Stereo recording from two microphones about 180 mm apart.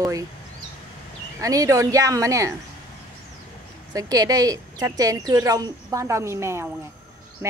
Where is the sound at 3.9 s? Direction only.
20° right (ahead or behind).